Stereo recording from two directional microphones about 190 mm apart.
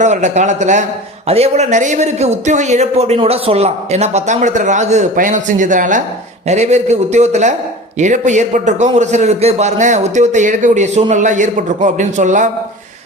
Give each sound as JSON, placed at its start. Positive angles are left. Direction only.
{"t": 0.0, "sound": "speech", "side_deg": -40}